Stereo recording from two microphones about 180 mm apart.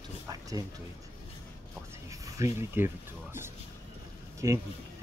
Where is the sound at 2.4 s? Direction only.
15° right (ahead or behind).